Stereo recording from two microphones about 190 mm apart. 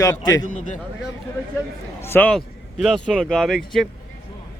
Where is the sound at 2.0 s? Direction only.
10° left (ahead or behind).